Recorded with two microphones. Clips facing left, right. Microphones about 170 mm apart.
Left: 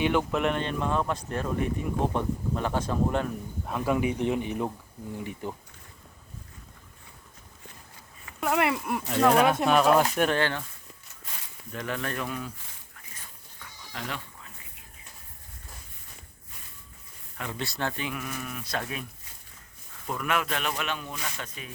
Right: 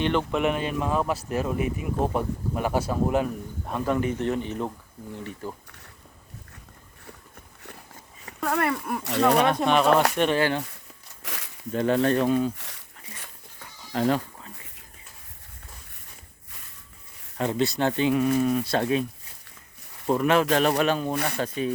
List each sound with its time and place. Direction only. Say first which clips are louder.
0.0 s speech: right 1 dB; 5° left (ahead or behind)
3.7 s speech: right 1 dB; 5° left (ahead or behind)
8.4 s speech: even; 10° left (ahead or behind)
10.3 s speech: right 4 dB; 10° right (ahead or behind)
11.2 s a sound: right 7 dB; 90° right
11.7 s speech: right 11 dB; 30° right (ahead or behind)
12.5 s a sound: right 5 dB; 75° right (ahead or behind)
13.9 s sheep: right 14 dB; 35° right (ahead or behind)
17.3 s speech: right 10 dB; 35° right (ahead or behind)
17.6 s speech: right 8 dB; 20° right (ahead or behind)
20.1 s speech: right 9 dB; 30° right (ahead or behind)
21.1 s speech: right 10 dB; 65° right (ahead or behind)
21.4 s speech: right 15 dB; 30° right (ahead or behind)